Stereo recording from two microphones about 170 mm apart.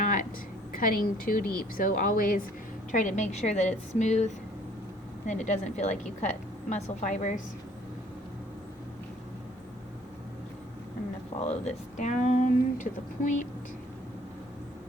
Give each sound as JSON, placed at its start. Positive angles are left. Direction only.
{"t": 0.0, "sound": "a sound", "side_deg": 50}
{"t": 0.7, "sound": "speech", "side_deg": 55}
{"t": 11.3, "sound": "speech", "side_deg": 35}
{"t": 11.9, "sound": "speech", "side_deg": 45}